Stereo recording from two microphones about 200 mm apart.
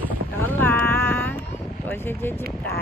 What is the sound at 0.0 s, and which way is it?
Boat, 10° left (ahead or behind).